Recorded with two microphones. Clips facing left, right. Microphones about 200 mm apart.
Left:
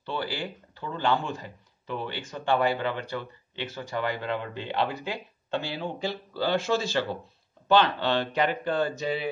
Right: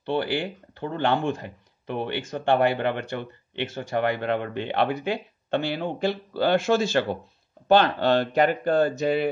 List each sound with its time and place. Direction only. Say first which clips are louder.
0.0 s speech: right 7 dB; 60° right (ahead or behind)